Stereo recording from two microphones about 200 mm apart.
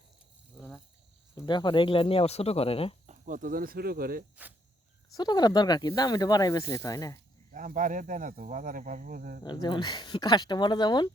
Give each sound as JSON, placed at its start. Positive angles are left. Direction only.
{"t": 1.4, "sound": "speech", "side_deg": 20}
{"t": 3.1, "sound": "speech", "side_deg": -40}
{"t": 5.1, "sound": "speech", "side_deg": 20}
{"t": 7.5, "sound": "speech", "side_deg": -40}
{"t": 9.4, "sound": "speech", "side_deg": 20}